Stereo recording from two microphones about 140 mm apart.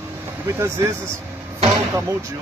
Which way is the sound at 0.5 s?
20° right (ahead or behind).